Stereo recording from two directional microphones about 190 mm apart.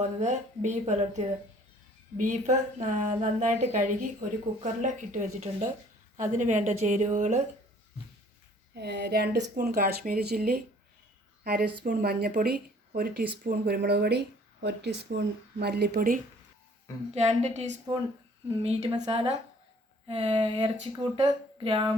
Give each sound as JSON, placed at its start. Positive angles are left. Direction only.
{"t": 0.0, "sound": "a woman's voice", "side_deg": -40}
{"t": 8.7, "sound": "speech", "side_deg": -60}
{"t": 11.8, "sound": "speech", "side_deg": -55}
{"t": 17.2, "sound": "a woman's voice", "side_deg": -35}